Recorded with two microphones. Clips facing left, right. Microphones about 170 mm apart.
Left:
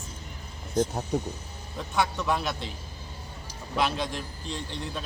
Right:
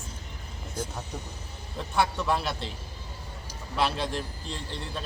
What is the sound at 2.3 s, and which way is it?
Speech, centre (ahead or behind).